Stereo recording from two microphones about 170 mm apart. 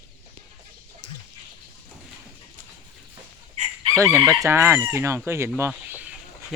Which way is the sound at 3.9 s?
20° right (ahead or behind).